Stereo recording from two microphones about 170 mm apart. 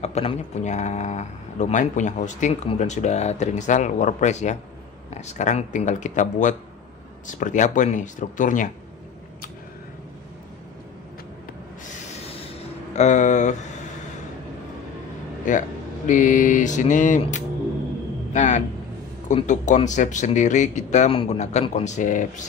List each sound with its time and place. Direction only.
0.0 s speech: 35° left (ahead or behind)
11.9 s train: 40° left (ahead or behind)
12.9 s speech: 45° left (ahead or behind)
15.5 s speech: 50° left (ahead or behind)
18.3 s a man's voice: 45° left (ahead or behind)